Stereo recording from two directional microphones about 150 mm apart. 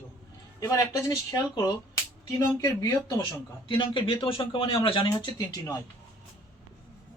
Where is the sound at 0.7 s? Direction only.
20° left (ahead or behind).